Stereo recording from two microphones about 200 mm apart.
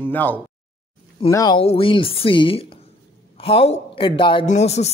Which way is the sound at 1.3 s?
20° left (ahead or behind).